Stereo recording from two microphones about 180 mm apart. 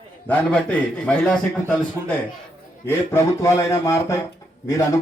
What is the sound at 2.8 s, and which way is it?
A man's voice, 15° left (ahead or behind).